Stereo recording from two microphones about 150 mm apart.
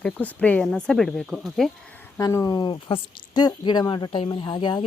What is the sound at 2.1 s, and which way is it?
Speech, 20° left (ahead or behind).